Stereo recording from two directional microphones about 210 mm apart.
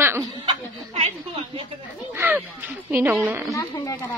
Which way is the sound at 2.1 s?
10° right (ahead or behind).